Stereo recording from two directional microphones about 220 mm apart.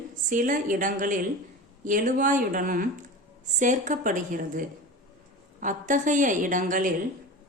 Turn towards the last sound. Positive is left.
turn(degrees=-35)  # may be behind; listen again after turning